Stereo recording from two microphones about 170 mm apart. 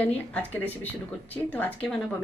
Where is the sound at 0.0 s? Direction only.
10° left (ahead or behind).